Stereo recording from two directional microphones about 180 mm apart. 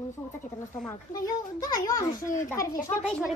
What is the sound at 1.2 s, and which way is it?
A child's voice, 20° left (ahead or behind).